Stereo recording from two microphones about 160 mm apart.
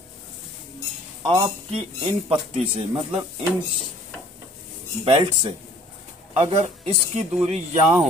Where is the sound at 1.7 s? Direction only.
40° right (ahead or behind).